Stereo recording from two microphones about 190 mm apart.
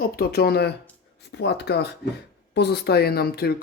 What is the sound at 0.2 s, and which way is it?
Speech, 55° left (ahead or behind).